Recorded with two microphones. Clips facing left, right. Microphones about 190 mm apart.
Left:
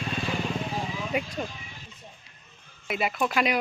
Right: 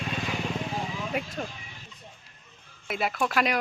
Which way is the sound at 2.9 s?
Centre (ahead or behind).